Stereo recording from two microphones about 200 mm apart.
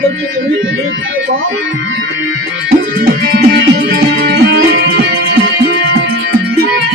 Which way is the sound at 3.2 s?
50° right (ahead or behind).